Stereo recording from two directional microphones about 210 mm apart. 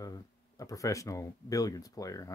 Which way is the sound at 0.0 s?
15° left (ahead or behind).